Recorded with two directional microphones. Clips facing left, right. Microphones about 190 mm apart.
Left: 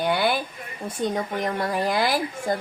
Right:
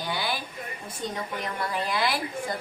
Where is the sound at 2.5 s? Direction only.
50° left (ahead or behind).